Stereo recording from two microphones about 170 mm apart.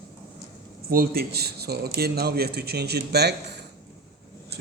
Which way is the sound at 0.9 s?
60° right (ahead or behind).